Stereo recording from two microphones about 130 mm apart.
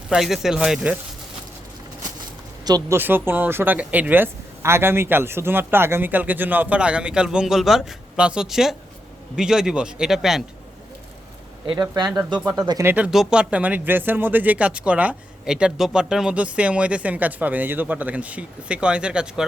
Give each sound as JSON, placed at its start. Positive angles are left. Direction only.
{"t": 0.1, "sound": "a man's voice", "side_deg": -5}
{"t": 2.9, "sound": "a man's voice", "side_deg": -15}
{"t": 11.6, "sound": "speech", "side_deg": -40}
{"t": 12.8, "sound": "speech", "side_deg": -15}